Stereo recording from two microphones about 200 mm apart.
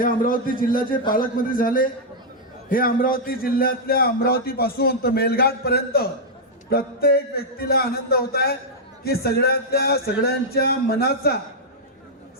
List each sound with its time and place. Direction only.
0.0 s speech: 45° left (ahead or behind)